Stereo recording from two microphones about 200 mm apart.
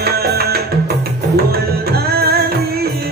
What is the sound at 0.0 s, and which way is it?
Music, 50° right (ahead or behind).